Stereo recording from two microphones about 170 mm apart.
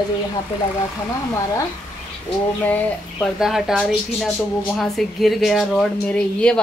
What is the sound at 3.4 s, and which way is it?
A woman's voice, centre (ahead or behind).